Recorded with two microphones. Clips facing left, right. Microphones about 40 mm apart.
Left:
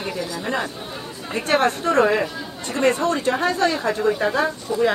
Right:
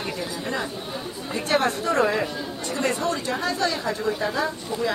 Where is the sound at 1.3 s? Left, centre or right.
Left.